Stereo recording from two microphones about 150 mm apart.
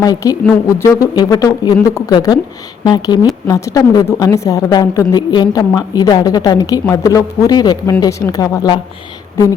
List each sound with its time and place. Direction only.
0.0 s a woman's voice: 25° left (ahead or behind)